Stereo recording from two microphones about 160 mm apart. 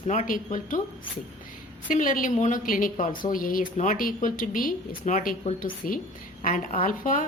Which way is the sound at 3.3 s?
60° left (ahead or behind).